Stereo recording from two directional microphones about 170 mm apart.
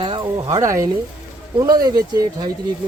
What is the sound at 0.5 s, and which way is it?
Speech, 20° right (ahead or behind).